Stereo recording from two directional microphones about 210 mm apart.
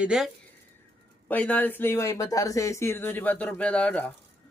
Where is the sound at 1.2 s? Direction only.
5° left (ahead or behind).